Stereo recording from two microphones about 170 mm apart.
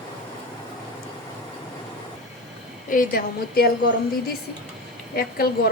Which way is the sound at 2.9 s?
55° left (ahead or behind).